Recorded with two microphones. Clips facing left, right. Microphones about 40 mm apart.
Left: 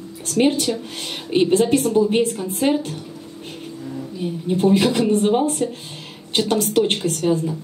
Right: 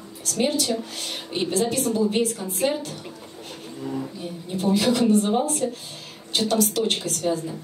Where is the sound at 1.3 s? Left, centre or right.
Left.